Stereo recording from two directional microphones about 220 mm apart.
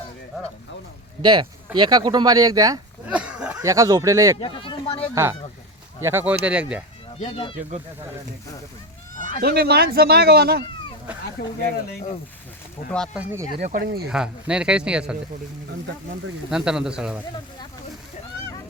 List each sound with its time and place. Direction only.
1.2 s speech: 20° right (ahead or behind)
3.1 s speech: 5° right (ahead or behind)
4.4 s speech: 25° left (ahead or behind)
5.1 s speech: 10° right (ahead or behind)
7.2 s speech: 25° left (ahead or behind)
9.1 s a sound: 35° left (ahead or behind)
9.4 s speech: 45° right (ahead or behind)
11.4 s speech: 45° left (ahead or behind)
13.6 s speech: 30° right (ahead or behind)
13.8 s speech: 45° right (ahead or behind)
14.1 s speech: 5° right (ahead or behind)
16.5 s speech: 5° right (ahead or behind)